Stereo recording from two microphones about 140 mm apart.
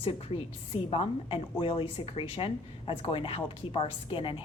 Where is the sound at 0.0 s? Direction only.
40° left (ahead or behind).